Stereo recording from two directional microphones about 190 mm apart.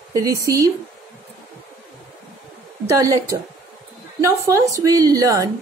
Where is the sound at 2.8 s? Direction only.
20° right (ahead or behind).